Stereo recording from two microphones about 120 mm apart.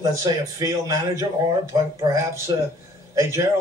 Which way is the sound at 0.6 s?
30° right (ahead or behind).